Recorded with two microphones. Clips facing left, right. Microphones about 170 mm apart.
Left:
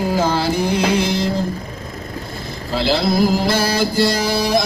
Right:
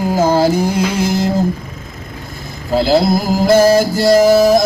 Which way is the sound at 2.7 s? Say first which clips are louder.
Right 5 dB; 45° right (ahead or behind).